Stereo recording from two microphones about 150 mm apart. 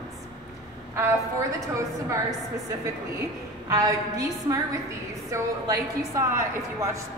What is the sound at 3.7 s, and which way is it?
A woman's voice, 25° right (ahead or behind).